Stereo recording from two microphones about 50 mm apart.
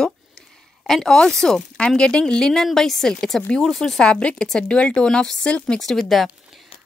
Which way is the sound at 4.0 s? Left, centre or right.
Left.